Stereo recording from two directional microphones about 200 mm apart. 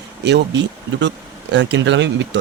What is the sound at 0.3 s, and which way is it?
Speech, 60° right (ahead or behind).